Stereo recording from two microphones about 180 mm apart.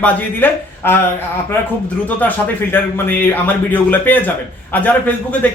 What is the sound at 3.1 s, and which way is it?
Speech, 10° left (ahead or behind).